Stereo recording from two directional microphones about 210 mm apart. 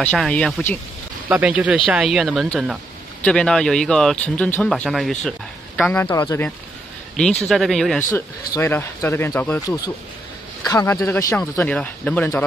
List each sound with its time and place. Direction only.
0.0 s speech: 5° left (ahead or behind)
1.3 s a man's voice: 5° right (ahead or behind); by 6.5 s 15° left (ahead or behind)
7.4 s speech: centre (ahead or behind)
8.5 s speech: 10° left (ahead or behind)